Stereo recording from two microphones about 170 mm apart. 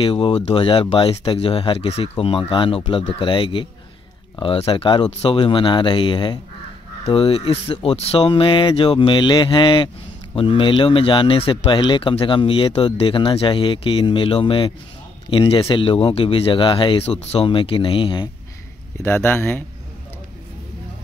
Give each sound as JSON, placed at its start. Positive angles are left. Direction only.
{"t": 0.0, "sound": "speech", "side_deg": 30}
{"t": 19.0, "sound": "speech", "side_deg": 10}